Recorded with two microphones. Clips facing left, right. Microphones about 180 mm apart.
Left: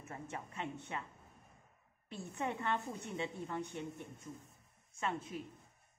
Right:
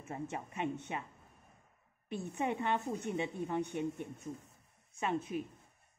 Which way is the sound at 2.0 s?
20° right (ahead or behind).